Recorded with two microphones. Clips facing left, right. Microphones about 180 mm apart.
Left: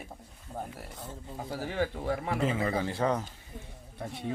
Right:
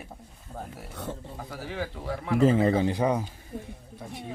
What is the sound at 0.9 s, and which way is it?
Speech, 70° right (ahead or behind).